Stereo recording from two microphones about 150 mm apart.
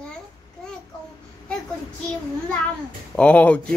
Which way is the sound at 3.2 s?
10° left (ahead or behind).